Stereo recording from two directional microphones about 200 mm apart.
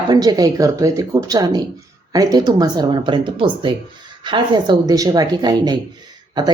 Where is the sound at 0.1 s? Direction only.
20° right (ahead or behind).